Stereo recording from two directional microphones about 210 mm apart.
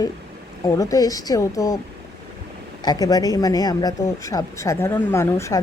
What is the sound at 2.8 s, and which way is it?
Speech, 20° left (ahead or behind).